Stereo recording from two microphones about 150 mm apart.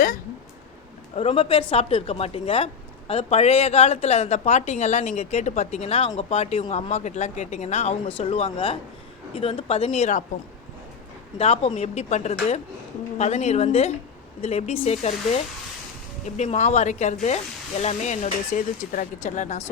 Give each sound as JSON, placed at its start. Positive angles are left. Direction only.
{"t": 1.1, "sound": "a woman's voice", "side_deg": 40}
{"t": 11.3, "sound": "a woman's voice", "side_deg": 40}
{"t": 16.2, "sound": "a woman's voice", "side_deg": 50}